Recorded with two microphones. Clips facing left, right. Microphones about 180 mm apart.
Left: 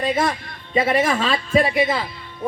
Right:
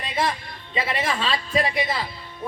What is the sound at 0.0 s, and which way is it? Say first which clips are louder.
A man's voice: left 5 dB; 45° left (ahead or behind).